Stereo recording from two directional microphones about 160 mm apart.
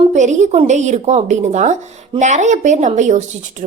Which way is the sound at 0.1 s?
50° right (ahead or behind).